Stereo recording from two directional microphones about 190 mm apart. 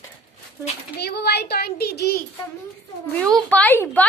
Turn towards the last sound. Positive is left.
turn(degrees=10)  # may be behind; listen again after turning